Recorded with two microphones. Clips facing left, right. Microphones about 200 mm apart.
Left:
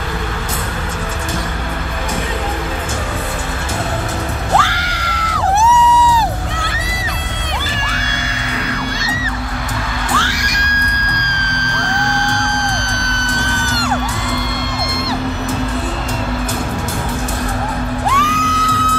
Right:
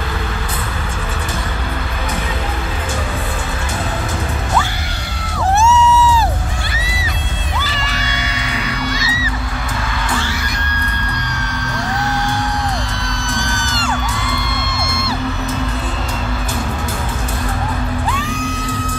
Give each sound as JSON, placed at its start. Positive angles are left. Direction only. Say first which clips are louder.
{"t": 4.6, "sound": "screaming", "louder": "left 3 dB", "side_deg": 90}
{"t": 10.1, "sound": "music", "louder": "left 1 dB", "side_deg": 90}
{"t": 11.7, "sound": "music", "louder": "even", "side_deg": -5}
{"t": 13.5, "sound": "music", "louder": "left 3 dB", "side_deg": 65}
{"t": 18.0, "sound": "music", "louder": "left 3 dB", "side_deg": 85}